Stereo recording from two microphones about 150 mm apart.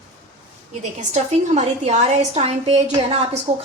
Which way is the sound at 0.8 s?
50° right (ahead or behind).